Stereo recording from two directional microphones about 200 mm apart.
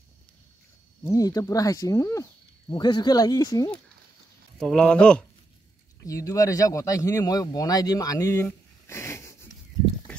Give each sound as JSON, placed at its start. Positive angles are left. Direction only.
{"t": 1.0, "sound": "speech", "side_deg": 15}
{"t": 4.6, "sound": "speech", "side_deg": 5}
{"t": 6.0, "sound": "speech", "side_deg": 15}